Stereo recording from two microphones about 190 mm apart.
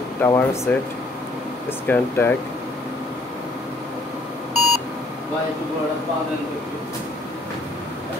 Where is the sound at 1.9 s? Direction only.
10° left (ahead or behind).